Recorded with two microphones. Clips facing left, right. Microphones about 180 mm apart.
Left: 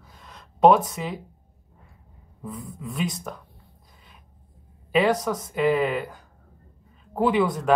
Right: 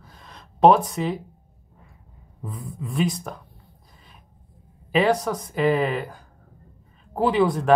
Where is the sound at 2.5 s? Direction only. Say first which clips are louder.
Even; centre (ahead or behind).